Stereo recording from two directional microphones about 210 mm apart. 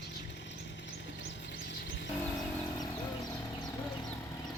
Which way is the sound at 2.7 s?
20° left (ahead or behind).